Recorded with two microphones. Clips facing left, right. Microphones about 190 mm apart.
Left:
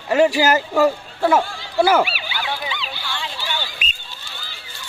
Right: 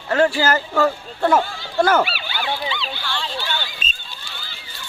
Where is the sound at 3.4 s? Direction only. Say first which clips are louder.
Even; 10° left (ahead or behind).